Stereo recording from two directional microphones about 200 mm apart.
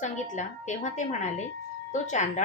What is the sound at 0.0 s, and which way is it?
A woman's voice, 40° left (ahead or behind).